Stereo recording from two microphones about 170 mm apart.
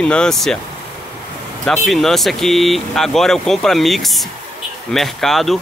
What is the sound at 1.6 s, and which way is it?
Speech, 5° left (ahead or behind).